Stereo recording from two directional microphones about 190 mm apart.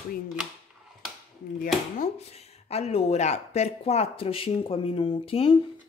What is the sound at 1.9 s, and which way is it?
Speech, 35° left (ahead or behind).